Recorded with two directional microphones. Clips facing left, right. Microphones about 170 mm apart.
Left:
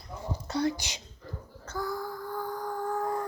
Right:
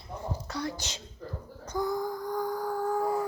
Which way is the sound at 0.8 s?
15° left (ahead or behind).